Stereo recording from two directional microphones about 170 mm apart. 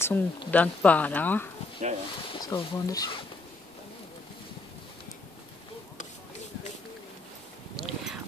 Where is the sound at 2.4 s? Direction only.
20° left (ahead or behind).